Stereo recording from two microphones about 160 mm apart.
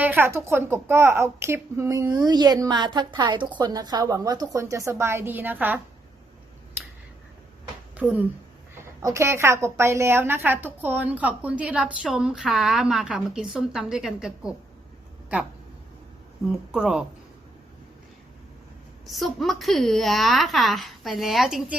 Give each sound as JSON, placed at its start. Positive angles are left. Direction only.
{"t": 0.0, "sound": "speech", "side_deg": -15}
{"t": 7.9, "sound": "a woman's voice", "side_deg": -10}
{"t": 16.5, "sound": "a woman's voice", "side_deg": -5}
{"t": 19.0, "sound": "a woman's voice", "side_deg": 0}